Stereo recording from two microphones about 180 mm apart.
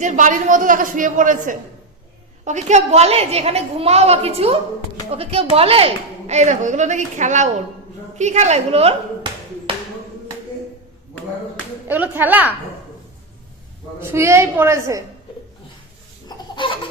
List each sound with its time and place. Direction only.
0.0 s a woman's voice: 45° right (ahead or behind)
11.9 s a woman's voice: 10° right (ahead or behind)
14.0 s a woman's voice: 15° right (ahead or behind)
16.3 s chicken: 25° left (ahead or behind)